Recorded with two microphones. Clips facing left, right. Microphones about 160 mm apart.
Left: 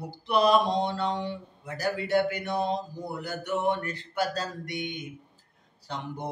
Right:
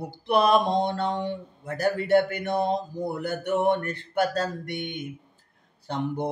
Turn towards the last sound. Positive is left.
turn(degrees=-55)  # may be behind; listen again after turning